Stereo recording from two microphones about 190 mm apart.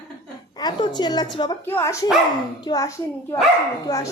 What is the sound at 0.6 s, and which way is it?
A woman's voice, 20° left (ahead or behind).